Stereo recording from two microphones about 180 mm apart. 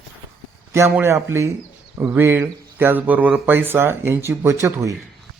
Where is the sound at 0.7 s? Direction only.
15° right (ahead or behind).